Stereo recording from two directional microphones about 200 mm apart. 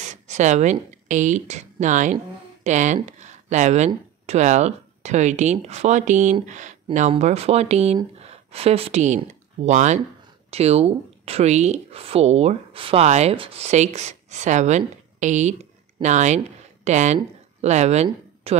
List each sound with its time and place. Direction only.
0.0 s speech: 35° right (ahead or behind)